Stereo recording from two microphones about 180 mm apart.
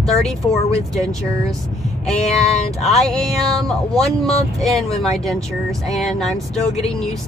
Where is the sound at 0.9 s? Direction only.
Centre (ahead or behind).